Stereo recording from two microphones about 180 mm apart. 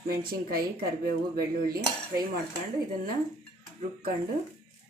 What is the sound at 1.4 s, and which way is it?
Cutlery, 55° right (ahead or behind).